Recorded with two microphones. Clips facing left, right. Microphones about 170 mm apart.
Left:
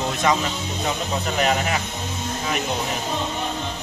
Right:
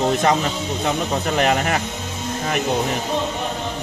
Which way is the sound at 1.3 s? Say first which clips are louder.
Right 3 dB; 50° right (ahead or behind).